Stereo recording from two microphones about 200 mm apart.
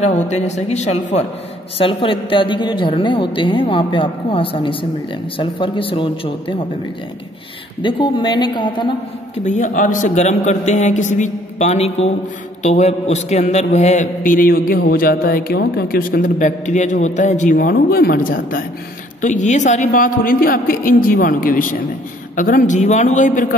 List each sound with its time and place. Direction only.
0.0 s a man's voice: 35° left (ahead or behind)
7.8 s a woman's voice: 25° left (ahead or behind)
9.4 s a man's voice: 40° left (ahead or behind)